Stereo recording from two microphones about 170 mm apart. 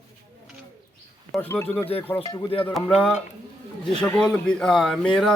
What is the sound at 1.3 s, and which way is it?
Speech, 10° left (ahead or behind).